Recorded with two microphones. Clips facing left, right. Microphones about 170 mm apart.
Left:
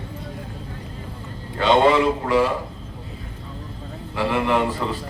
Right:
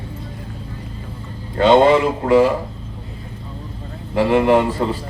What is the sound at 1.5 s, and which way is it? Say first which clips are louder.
Speech: right 4 dB; 40° right (ahead or behind).